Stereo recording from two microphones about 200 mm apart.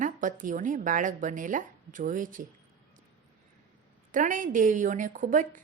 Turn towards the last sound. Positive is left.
turn(degrees=-40)  # may be behind; listen again after turning